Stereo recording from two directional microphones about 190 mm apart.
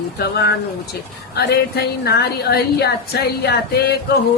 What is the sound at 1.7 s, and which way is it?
A woman's voice, 60° left (ahead or behind).